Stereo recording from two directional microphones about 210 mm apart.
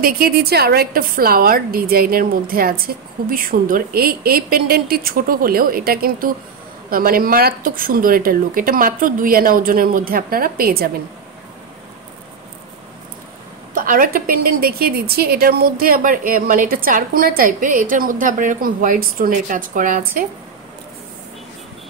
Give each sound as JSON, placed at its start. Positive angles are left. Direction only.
{"t": 0.0, "sound": "a woman's voice", "side_deg": -45}
{"t": 13.7, "sound": "a woman's voice", "side_deg": -40}